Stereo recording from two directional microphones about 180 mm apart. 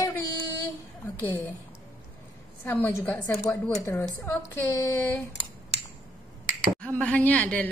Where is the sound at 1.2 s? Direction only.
15° left (ahead or behind).